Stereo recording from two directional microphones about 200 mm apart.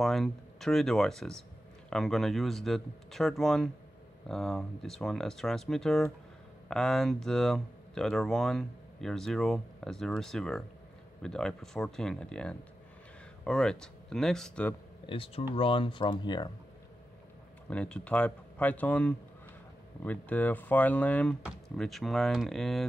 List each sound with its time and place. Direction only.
0.0 s speech: centre (ahead or behind)
15.0 s speech: 25° left (ahead or behind)
17.6 s speech: 5° left (ahead or behind)